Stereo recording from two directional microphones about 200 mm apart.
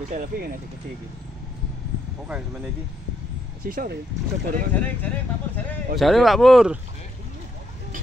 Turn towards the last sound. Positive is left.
turn(degrees=0)  # may be behind; listen again after turning